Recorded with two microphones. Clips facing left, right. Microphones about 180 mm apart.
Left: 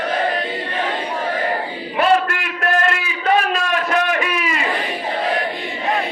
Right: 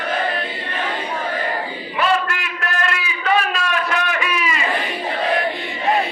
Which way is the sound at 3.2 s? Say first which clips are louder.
Left 2 dB; 40° left (ahead or behind).